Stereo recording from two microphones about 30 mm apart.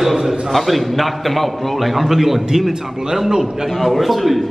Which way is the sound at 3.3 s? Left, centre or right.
Right.